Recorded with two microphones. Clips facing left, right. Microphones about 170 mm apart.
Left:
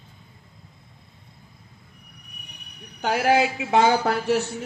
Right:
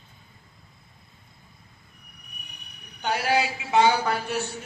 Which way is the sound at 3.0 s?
65° left (ahead or behind).